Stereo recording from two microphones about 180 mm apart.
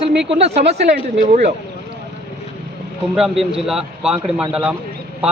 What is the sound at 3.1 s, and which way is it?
A man's voice, 5° right (ahead or behind).